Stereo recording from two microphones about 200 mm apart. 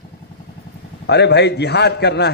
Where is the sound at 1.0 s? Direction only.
55° left (ahead or behind).